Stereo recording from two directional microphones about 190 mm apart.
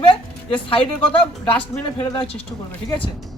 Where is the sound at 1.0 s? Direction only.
10° left (ahead or behind).